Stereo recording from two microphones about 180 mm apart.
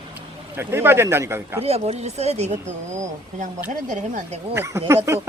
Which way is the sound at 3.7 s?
45° right (ahead or behind).